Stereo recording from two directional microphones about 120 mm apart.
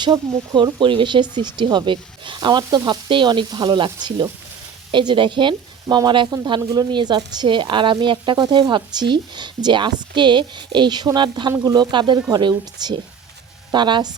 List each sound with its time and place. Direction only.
0.0 s speech: 40° right (ahead or behind)